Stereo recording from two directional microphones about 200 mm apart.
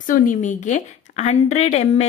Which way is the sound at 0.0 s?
40° left (ahead or behind).